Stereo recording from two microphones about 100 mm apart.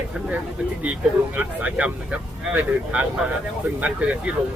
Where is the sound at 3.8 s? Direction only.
15° right (ahead or behind).